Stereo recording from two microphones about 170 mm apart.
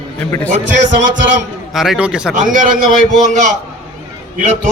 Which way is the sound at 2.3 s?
50° right (ahead or behind).